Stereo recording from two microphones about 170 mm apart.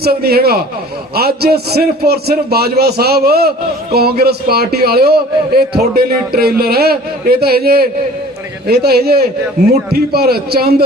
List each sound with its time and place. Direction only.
0.0 s a man's voice: 65° right (ahead or behind)